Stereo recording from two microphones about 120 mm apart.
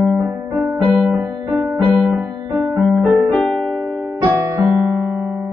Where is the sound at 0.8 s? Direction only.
Centre (ahead or behind).